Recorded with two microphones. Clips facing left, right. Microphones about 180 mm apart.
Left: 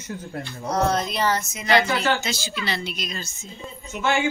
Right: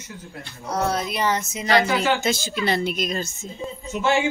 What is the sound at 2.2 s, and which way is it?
Speech, 50° right (ahead or behind).